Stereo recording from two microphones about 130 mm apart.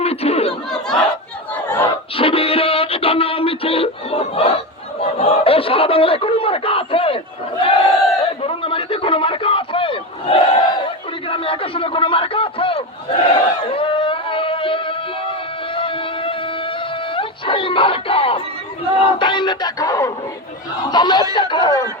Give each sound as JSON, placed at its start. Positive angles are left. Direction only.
{"t": 0.0, "sound": "chatter", "side_deg": 50}
{"t": 0.7, "sound": "battle cry", "side_deg": 5}
{"t": 1.6, "sound": "battle cry", "side_deg": 15}
{"t": 2.1, "sound": "music", "side_deg": 45}
{"t": 4.9, "sound": "a sound", "side_deg": 50}
{"t": 7.6, "sound": "battle cry", "side_deg": 45}
{"t": 8.2, "sound": "a sound", "side_deg": 45}
{"t": 17.2, "sound": "dog", "side_deg": 40}
{"t": 19.2, "sound": "music", "side_deg": 35}
{"t": 20.9, "sound": "snicker", "side_deg": 35}
{"t": 21.3, "sound": "a sound", "side_deg": 35}